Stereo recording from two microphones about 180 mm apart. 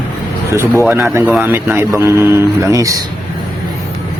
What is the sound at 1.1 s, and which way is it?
Speech, 10° right (ahead or behind).